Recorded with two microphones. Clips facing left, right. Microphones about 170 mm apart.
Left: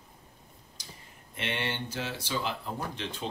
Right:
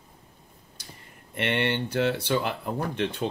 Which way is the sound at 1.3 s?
60° right (ahead or behind).